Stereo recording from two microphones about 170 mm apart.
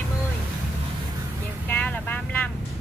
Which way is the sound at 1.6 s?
10° left (ahead or behind).